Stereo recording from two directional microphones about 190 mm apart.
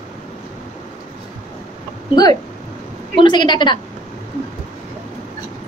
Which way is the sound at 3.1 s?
25° left (ahead or behind).